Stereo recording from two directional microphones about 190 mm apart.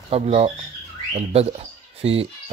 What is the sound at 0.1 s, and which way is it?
Speech, 35° right (ahead or behind).